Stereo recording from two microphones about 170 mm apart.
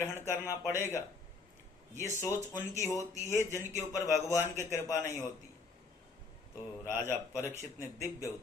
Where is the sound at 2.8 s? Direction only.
20° left (ahead or behind).